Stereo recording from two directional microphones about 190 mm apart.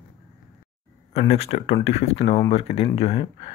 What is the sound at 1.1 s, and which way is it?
Speech, 35° left (ahead or behind).